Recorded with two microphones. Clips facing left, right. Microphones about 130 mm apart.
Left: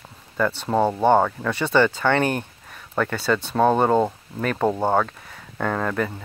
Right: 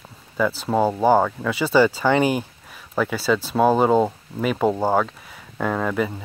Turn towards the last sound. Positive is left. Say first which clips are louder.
# right 1 dB
turn(degrees=-5)  # may be behind; listen again after turning